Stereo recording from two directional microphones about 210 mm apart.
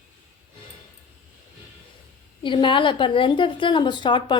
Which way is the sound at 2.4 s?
25° left (ahead or behind).